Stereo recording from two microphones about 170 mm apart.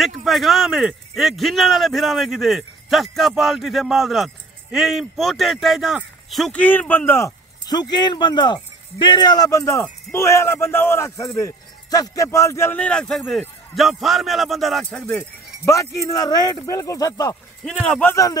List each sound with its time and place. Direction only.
0.0 s speech: centre (ahead or behind)
15.0 s speech: 15° left (ahead or behind)
17.6 s speech: 5° left (ahead or behind)
18.1 s speech: 20° left (ahead or behind)